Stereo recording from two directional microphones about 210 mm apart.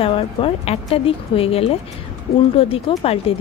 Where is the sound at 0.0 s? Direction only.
25° left (ahead or behind).